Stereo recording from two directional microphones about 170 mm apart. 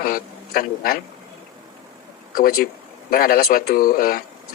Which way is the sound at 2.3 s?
60° left (ahead or behind).